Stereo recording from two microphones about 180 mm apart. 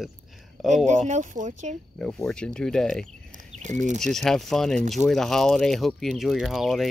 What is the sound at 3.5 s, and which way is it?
Speech, 40° right (ahead or behind).